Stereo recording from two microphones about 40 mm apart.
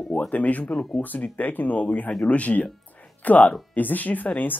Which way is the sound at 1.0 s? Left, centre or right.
Left.